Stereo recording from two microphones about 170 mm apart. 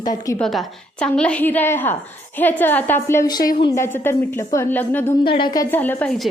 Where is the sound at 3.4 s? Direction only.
55° left (ahead or behind).